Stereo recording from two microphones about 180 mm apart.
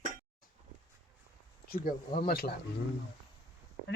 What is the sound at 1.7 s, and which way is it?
Speech, 50° left (ahead or behind).